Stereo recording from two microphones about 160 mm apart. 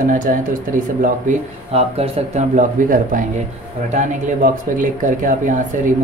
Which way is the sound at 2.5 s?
55° right (ahead or behind).